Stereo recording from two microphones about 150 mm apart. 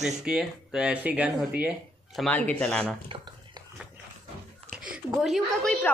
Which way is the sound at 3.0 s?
30° right (ahead or behind).